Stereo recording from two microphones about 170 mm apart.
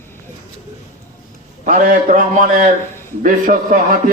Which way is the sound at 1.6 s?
50° right (ahead or behind).